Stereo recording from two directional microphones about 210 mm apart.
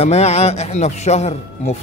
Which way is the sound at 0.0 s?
30° left (ahead or behind).